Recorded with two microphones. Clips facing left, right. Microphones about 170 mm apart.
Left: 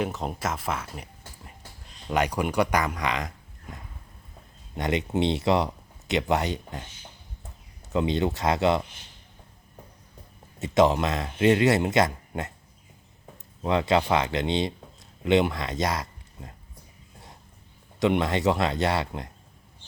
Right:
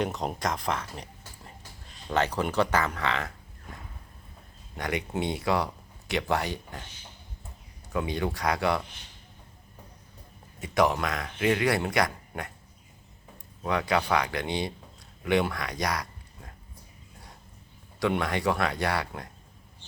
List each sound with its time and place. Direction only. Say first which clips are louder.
0.0 s speech: even; centre (ahead or behind)
2.0 s speech: left 2 dB; 15° left (ahead or behind)
4.8 s speech: left 5 dB; 20° left (ahead or behind)
7.9 s speech: left 5 dB; 20° left (ahead or behind)
10.6 s speech: left 4 dB; 25° left (ahead or behind)
13.6 s speech: left 4 dB; 25° left (ahead or behind)
18.0 s speech: left 4 dB; 20° left (ahead or behind)